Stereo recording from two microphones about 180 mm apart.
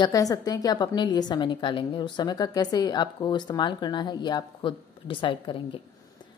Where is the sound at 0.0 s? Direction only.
20° left (ahead or behind).